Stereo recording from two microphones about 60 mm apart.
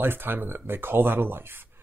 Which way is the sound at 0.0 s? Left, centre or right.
Right.